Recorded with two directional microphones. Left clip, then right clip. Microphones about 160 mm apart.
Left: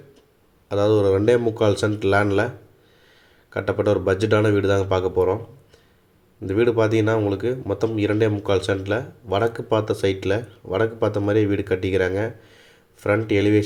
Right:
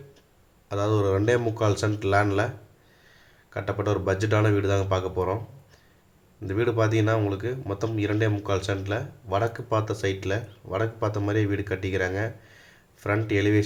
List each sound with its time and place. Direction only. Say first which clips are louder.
0.7 s speech: left 7 dB; 15° left (ahead or behind)
3.5 s speech: left 7 dB; 20° left (ahead or behind)
6.5 s speech: left 6 dB; 20° left (ahead or behind)